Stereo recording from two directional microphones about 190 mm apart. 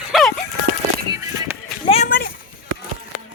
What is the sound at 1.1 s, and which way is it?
Music, 15° right (ahead or behind).